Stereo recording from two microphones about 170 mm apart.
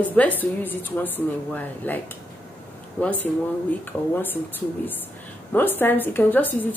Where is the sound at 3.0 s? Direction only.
10° left (ahead or behind).